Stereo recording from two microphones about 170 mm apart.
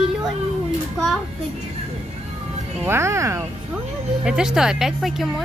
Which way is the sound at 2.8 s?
15° right (ahead or behind).